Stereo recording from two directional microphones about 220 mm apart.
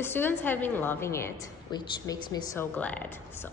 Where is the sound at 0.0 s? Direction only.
10° left (ahead or behind).